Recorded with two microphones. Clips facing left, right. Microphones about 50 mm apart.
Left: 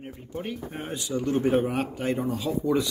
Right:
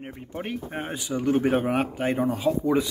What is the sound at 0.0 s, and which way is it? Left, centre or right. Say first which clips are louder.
Speech: right 1 dB; right.